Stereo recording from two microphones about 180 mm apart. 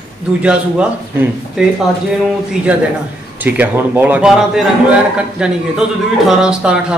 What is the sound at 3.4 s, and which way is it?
A man's voice, 10° right (ahead or behind).